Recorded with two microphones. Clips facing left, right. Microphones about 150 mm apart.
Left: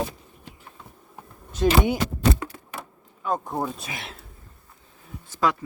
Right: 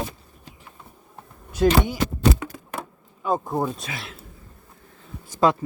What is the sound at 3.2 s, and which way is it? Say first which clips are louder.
Speech: right 3 dB; 5° right (ahead or behind).